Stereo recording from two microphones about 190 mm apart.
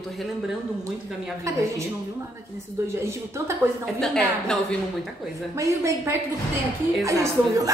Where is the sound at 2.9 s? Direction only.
15° right (ahead or behind).